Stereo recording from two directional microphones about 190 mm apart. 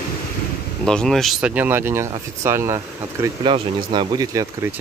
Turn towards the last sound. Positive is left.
turn(degrees=-15)  # may be behind; listen again after turning